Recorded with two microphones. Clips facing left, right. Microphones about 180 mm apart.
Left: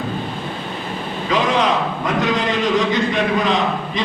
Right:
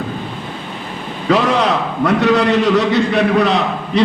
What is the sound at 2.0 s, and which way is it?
Speech, 70° right (ahead or behind).